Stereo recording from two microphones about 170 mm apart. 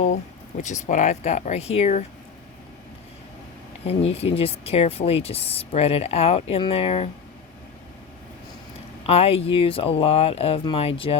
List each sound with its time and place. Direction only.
0.0 s speech: 45° left (ahead or behind)
3.8 s speech: 35° left (ahead or behind)
9.0 s speech: 35° left (ahead or behind)